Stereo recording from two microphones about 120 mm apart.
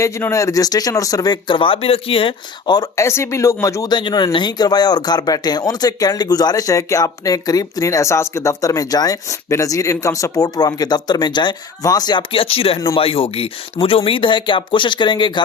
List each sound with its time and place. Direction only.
0.0 s speech: 25° left (ahead or behind)
12.3 s speech: 50° left (ahead or behind)